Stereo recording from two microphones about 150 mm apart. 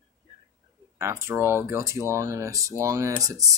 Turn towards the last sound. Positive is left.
turn(degrees=-25)  # may be behind; listen again after turning